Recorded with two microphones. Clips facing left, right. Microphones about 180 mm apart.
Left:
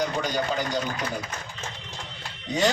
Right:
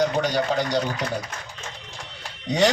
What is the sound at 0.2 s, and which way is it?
Speech, 80° right.